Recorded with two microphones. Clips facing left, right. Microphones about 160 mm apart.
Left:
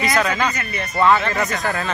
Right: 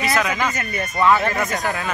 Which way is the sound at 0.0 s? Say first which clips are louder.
Left 1 dB; 5° right (ahead or behind).